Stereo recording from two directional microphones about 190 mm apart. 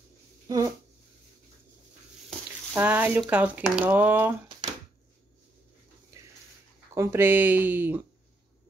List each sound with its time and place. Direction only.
0.5 s speech: 20° right (ahead or behind)
2.7 s speech: 10° right (ahead or behind)
6.1 s a sound: 15° right (ahead or behind)
6.9 s speech: 15° right (ahead or behind)